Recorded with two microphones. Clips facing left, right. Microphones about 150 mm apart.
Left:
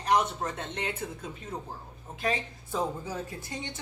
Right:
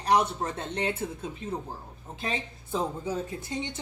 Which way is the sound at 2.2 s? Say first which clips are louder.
Left 3 dB; 25° right (ahead or behind).